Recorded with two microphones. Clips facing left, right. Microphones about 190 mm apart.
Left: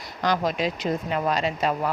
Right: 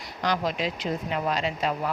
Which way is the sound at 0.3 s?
45° left (ahead or behind).